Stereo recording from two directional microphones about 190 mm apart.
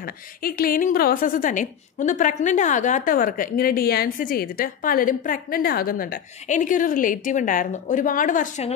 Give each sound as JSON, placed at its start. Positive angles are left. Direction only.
{"t": 0.0, "sound": "a woman's voice", "side_deg": 50}